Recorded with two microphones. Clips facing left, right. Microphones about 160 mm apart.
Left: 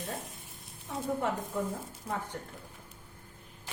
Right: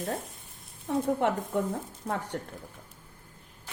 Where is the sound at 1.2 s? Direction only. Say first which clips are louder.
Right 4 dB; 70° right (ahead or behind).